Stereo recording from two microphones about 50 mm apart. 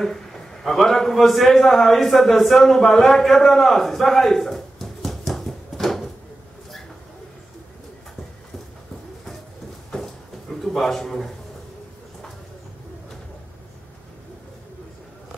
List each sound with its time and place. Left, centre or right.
0.0 s a man's voice: centre
9.8 s a sound: centre
10.6 s a man's voice: centre